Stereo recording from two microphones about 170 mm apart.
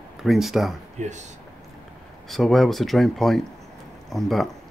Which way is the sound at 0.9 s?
45° right (ahead or behind).